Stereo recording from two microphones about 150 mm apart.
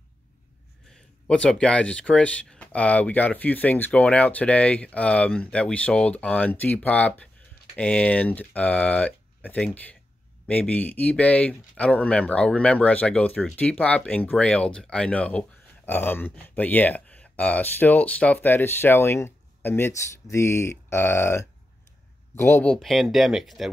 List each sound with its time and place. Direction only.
0.9 s speech: 5° left (ahead or behind)